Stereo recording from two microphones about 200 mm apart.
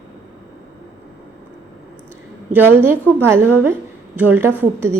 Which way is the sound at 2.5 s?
10° right (ahead or behind).